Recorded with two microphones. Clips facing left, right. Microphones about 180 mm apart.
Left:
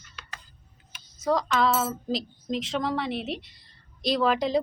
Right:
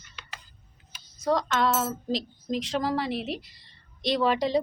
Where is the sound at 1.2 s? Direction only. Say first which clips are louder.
Left 1 dB; centre (ahead or behind).